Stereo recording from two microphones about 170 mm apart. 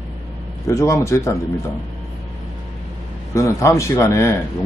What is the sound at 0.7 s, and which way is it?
Speech, 15° left (ahead or behind).